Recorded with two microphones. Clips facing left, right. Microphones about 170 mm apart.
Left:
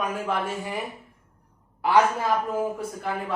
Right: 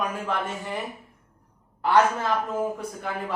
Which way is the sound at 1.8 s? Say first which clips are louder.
Even; 10° left (ahead or behind).